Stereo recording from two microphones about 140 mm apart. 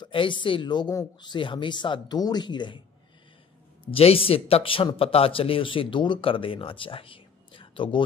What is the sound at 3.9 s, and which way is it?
Speech, 45° left (ahead or behind).